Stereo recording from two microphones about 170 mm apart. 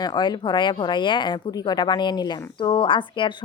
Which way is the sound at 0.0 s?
25° left (ahead or behind).